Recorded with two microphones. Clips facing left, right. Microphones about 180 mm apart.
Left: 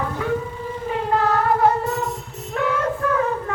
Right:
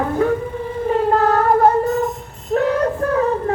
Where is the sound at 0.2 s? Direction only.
45° right (ahead or behind).